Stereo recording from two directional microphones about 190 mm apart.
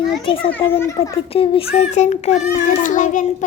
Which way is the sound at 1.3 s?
30° left (ahead or behind).